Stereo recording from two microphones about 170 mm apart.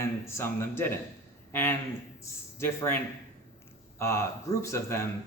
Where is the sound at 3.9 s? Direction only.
15° left (ahead or behind).